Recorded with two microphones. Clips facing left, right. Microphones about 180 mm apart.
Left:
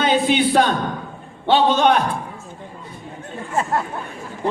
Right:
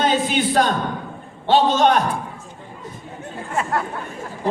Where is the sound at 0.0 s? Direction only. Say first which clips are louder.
Left 2 dB; 45° right (ahead or behind).